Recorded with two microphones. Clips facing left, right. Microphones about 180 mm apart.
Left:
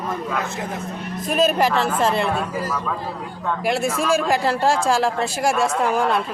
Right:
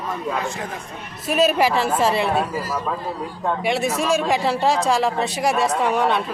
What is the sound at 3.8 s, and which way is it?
Speech, 55° left (ahead or behind).